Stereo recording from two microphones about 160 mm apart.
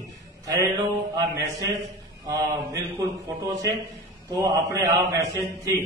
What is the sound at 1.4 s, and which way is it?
A man's voice, 20° right (ahead or behind).